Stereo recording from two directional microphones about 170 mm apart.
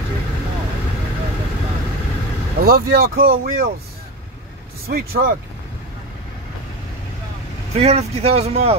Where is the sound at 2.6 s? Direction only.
60° right (ahead or behind).